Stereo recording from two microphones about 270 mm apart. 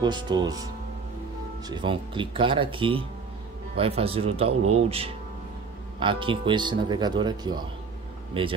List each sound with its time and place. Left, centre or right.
0.0 s speech: centre
1.7 s speech: centre